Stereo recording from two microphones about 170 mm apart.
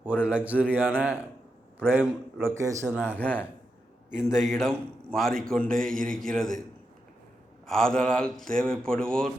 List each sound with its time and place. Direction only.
0.0 s a man's voice: 5° right (ahead or behind)
3.0 s speech: 10° left (ahead or behind)
4.1 s a man's voice: 5° right (ahead or behind)
7.7 s a man's voice: 5° left (ahead or behind)